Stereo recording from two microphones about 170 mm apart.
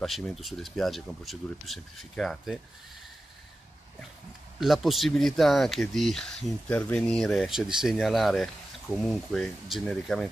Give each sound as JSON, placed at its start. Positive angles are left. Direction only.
{"t": 0.0, "sound": "speech", "side_deg": 0}
{"t": 4.6, "sound": "speech", "side_deg": 0}